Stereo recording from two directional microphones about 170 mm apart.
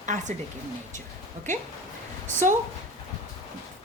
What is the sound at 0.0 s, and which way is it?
Speech, 45° right (ahead or behind).